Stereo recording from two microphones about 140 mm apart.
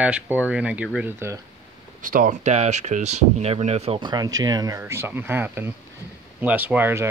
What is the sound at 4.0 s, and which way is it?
Speech, 30° right (ahead or behind).